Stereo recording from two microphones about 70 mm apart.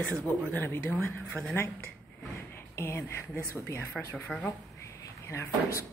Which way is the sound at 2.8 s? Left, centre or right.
Left.